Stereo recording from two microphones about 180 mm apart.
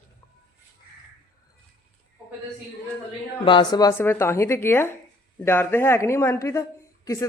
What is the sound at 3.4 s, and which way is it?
Speech, 25° left (ahead or behind).